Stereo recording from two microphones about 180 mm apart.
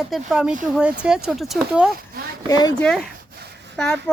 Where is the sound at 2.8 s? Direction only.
5° left (ahead or behind).